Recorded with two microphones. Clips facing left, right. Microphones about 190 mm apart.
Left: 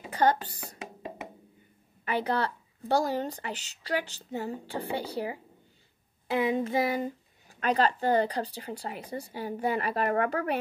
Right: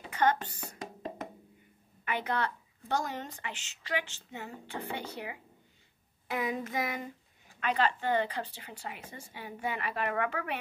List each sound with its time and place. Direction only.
0.1 s speech: 35° left (ahead or behind)
0.7 s music: 5° left (ahead or behind)
2.0 s speech: 35° left (ahead or behind)
6.2 s a sound: 30° left (ahead or behind)
7.6 s speech: 40° left (ahead or behind)